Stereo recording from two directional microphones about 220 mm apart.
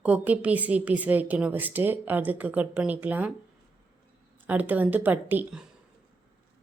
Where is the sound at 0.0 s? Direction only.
5° right (ahead or behind).